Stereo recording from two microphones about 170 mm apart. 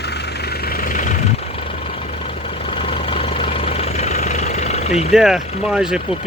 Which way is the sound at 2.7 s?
30° left (ahead or behind).